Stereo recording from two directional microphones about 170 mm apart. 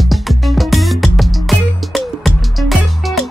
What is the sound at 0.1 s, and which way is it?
Music, centre (ahead or behind).